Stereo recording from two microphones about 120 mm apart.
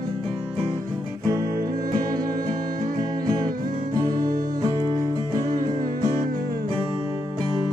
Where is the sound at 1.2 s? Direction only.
30° right (ahead or behind).